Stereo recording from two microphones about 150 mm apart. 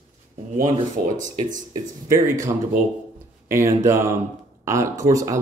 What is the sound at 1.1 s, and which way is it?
Speech, 60° right (ahead or behind).